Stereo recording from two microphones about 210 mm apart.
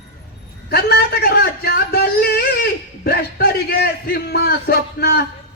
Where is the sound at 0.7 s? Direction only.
50° left (ahead or behind).